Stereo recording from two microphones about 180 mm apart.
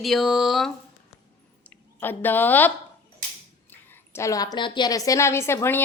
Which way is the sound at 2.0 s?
10° left (ahead or behind).